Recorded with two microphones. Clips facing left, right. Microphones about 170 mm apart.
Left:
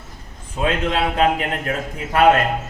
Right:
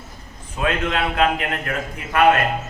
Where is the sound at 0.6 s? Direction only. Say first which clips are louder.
Left 2 dB; 30° left (ahead or behind).